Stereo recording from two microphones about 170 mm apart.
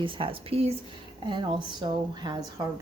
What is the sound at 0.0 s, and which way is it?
Speech, 30° right (ahead or behind).